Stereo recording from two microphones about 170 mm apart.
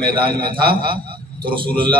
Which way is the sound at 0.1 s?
30° right (ahead or behind).